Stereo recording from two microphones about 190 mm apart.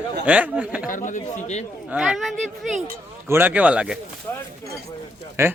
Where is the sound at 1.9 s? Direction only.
5° right (ahead or behind).